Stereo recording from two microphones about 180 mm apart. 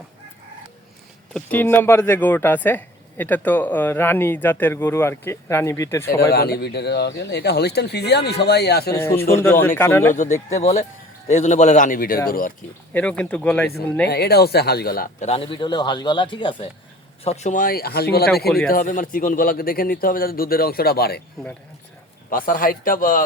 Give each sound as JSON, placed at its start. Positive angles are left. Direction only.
{"t": 1.3, "sound": "speech", "side_deg": 10}
{"t": 6.3, "sound": "a man's voice", "side_deg": 60}
{"t": 8.9, "sound": "speech", "side_deg": 15}
{"t": 10.5, "sound": "a man's voice", "side_deg": 35}
{"t": 12.9, "sound": "speech", "side_deg": 10}
{"t": 14.1, "sound": "a man's voice", "side_deg": 65}
{"t": 15.3, "sound": "speech", "side_deg": 30}
{"t": 17.2, "sound": "a man's voice", "side_deg": 40}
{"t": 18.7, "sound": "a man's voice", "side_deg": 50}
{"t": 22.3, "sound": "a man's voice", "side_deg": 50}